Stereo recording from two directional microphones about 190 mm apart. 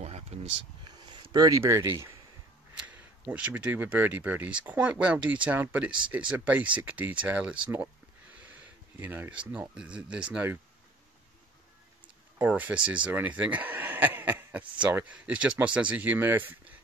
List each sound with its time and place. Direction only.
0.0 s a sound: 35° right (ahead or behind); by 2.0 s 15° right (ahead or behind)
3.3 s speech: 5° right (ahead or behind)
9.0 s speech: 10° right (ahead or behind)
12.4 s speech: 10° right (ahead or behind)